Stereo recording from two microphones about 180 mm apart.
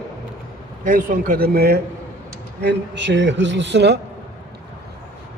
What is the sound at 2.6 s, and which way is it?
A man's voice, 75° right (ahead or behind).